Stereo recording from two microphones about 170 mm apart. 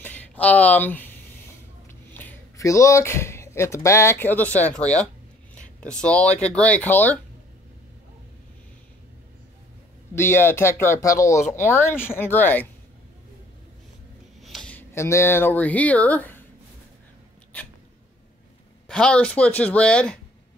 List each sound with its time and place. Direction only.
0.0 s a sound: 10° left (ahead or behind)
2.1 s speech: 15° left (ahead or behind)
10.1 s speech: 15° left (ahead or behind)
14.4 s speech: centre (ahead or behind)
18.9 s speech: 5° left (ahead or behind)